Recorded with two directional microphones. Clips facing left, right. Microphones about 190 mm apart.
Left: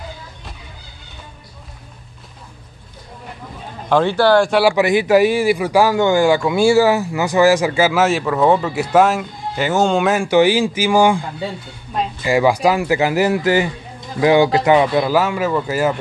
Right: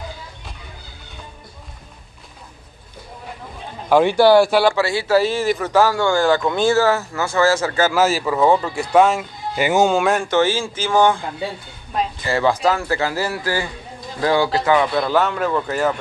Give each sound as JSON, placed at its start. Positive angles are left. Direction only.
{"t": 3.9, "sound": "speech", "side_deg": -10}
{"t": 4.6, "sound": "a man's voice", "side_deg": 20}
{"t": 9.6, "sound": "a man's voice", "side_deg": -10}
{"t": 12.2, "sound": "a man's voice", "side_deg": 15}
{"t": 15.0, "sound": "a man's voice", "side_deg": 5}